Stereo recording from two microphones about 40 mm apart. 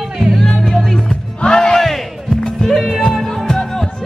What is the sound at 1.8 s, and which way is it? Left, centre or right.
Music, centre.